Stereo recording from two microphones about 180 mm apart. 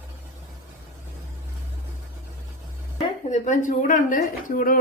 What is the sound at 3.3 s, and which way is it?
Speech, 40° left (ahead or behind).